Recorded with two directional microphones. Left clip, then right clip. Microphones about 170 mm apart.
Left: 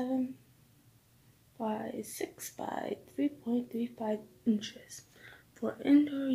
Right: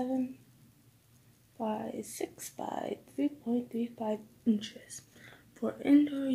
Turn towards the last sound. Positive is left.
turn(degrees=-5)  # may be behind; listen again after turning